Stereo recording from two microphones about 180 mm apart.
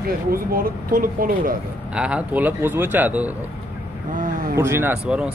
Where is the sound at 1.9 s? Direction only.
5° right (ahead or behind).